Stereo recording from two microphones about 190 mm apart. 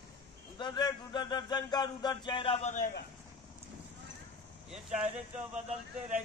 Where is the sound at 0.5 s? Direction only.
25° left (ahead or behind).